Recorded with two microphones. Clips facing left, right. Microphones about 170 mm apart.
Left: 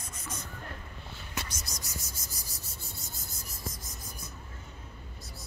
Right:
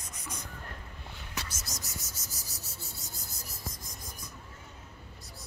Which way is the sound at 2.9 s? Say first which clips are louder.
Left 1 dB; centre (ahead or behind).